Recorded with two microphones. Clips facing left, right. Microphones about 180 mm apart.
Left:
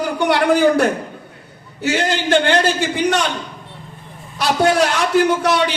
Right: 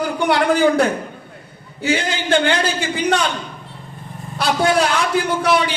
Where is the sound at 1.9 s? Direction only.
60° left (ahead or behind).